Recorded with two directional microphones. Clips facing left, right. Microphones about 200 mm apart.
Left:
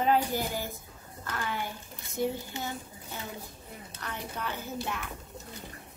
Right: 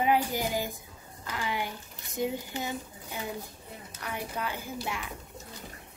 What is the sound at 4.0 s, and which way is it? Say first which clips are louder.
A woman's voice: right 3 dB; 10° right (ahead or behind).